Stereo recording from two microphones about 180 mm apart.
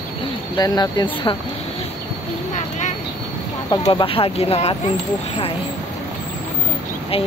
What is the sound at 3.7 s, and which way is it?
Speech, 25° left (ahead or behind).